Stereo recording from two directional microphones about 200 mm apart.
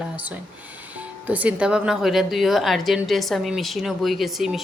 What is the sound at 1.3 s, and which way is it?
A woman's voice, 5° right (ahead or behind).